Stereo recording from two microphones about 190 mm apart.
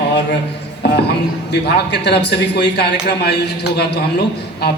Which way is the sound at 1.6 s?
65° left (ahead or behind).